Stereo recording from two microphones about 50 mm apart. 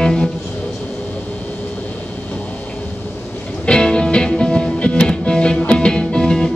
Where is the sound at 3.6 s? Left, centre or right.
Centre.